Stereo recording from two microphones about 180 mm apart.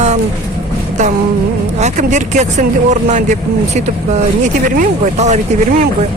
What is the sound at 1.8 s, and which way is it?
Speech, 40° right (ahead or behind).